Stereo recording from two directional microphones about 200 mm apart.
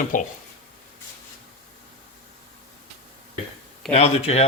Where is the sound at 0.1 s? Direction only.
40° left (ahead or behind).